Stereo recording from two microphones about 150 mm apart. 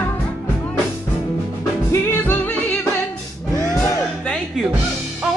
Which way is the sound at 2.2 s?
10° left (ahead or behind).